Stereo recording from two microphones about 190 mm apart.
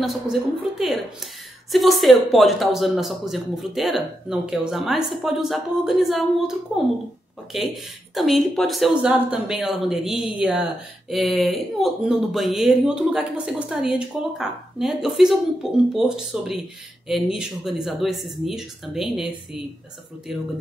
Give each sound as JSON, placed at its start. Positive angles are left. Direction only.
{"t": 0.0, "sound": "speech", "side_deg": 0}
{"t": 7.5, "sound": "speech", "side_deg": 0}